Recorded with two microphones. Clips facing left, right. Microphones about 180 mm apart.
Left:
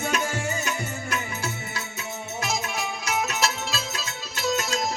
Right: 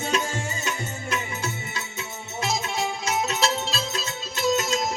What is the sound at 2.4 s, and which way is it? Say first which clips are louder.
Music: right 3 dB; 25° right (ahead or behind).